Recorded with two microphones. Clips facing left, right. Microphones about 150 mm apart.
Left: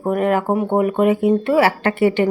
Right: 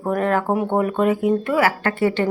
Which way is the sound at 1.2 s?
25° left (ahead or behind).